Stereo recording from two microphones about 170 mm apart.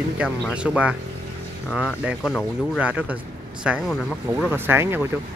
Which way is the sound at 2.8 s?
10° right (ahead or behind).